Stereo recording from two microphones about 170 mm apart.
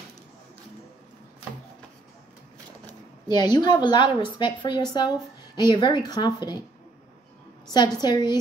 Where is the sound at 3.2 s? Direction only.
25° left (ahead or behind).